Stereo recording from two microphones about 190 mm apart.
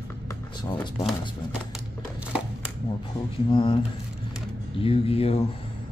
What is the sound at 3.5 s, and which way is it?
Speech, 25° left (ahead or behind).